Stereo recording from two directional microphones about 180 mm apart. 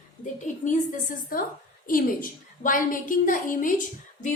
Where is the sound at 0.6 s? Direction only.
45° left (ahead or behind).